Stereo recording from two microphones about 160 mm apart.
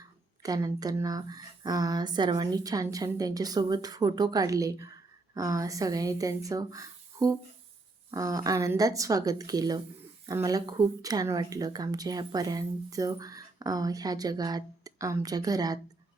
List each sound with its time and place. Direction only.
0.4 s speech: 25° right (ahead or behind)